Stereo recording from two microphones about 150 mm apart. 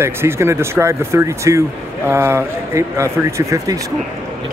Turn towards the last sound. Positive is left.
turn(degrees=-20)  # may be behind; listen again after turning